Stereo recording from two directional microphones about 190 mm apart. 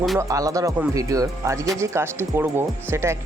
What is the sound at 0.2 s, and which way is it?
Speech, 20° right (ahead or behind).